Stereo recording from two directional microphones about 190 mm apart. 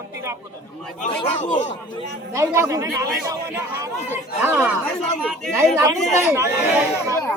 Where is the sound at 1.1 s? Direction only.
30° left (ahead or behind).